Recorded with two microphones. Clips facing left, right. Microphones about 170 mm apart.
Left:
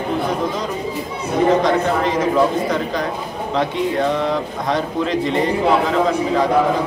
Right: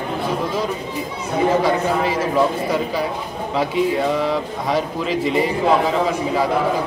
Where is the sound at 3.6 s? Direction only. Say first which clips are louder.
Even; 5° right (ahead or behind).